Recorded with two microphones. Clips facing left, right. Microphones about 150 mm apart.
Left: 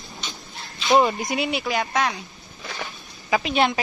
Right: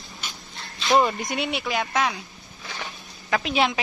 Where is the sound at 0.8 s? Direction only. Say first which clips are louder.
Left 2 dB; centre (ahead or behind).